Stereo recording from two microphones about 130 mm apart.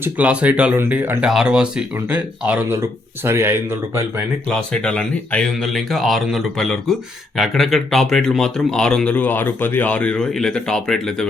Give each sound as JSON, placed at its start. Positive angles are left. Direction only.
{"t": 0.0, "sound": "speech", "side_deg": -10}
{"t": 4.4, "sound": "speech", "side_deg": 5}